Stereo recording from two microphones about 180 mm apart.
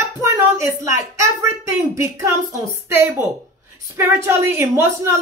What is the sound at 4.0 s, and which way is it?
Speech, 15° right (ahead or behind).